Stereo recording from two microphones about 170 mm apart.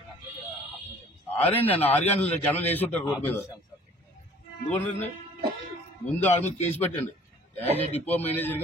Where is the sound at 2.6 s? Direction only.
10° left (ahead or behind).